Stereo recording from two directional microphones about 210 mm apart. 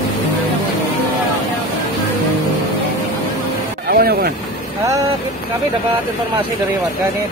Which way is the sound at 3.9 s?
45° right (ahead or behind).